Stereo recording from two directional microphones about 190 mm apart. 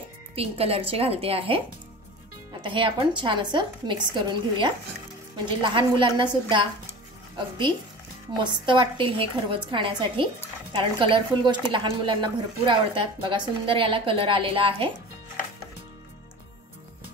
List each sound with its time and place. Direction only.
0.4 s a woman's voice: 30° right (ahead or behind)
2.6 s a woman's voice: 25° right (ahead or behind)